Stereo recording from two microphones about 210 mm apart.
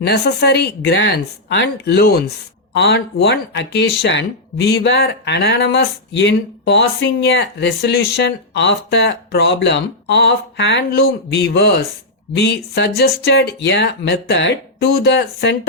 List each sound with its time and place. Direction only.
0.0 s speech: 50° left (ahead or behind)